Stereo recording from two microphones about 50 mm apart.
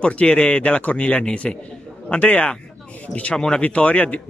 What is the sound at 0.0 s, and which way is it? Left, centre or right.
Speech, left.